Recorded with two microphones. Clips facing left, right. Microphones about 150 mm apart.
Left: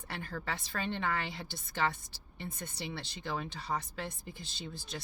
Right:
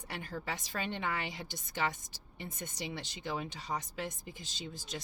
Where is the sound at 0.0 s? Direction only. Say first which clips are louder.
Even; 15° right (ahead or behind).